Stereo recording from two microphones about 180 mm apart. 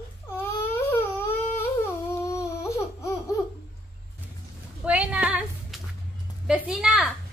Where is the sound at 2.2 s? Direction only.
15° left (ahead or behind).